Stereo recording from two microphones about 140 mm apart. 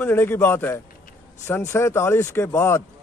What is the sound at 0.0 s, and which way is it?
Speech, 15° left (ahead or behind).